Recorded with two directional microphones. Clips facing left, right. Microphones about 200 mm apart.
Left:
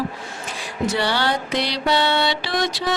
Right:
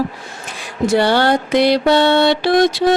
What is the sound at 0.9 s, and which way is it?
Mantra, 55° right (ahead or behind).